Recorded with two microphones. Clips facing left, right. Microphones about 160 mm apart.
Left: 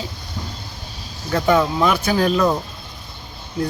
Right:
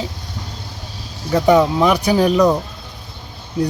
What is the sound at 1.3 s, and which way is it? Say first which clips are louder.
Speech: right 4 dB; 15° right (ahead or behind).